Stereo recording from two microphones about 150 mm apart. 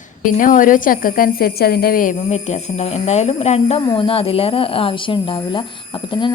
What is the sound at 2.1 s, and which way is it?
Speech, 50° left (ahead or behind).